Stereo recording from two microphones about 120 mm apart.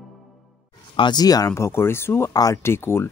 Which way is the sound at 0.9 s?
40° left (ahead or behind).